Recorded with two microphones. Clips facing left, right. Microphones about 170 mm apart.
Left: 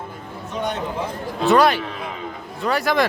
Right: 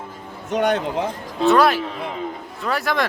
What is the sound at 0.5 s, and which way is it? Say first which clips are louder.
Speech: right 7 dB; 90° right.